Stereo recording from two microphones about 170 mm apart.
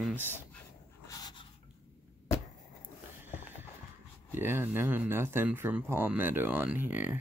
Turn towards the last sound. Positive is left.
turn(degrees=-10)  # may be behind; listen again after turning